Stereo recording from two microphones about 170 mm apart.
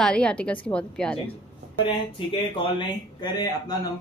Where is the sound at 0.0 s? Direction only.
5° left (ahead or behind).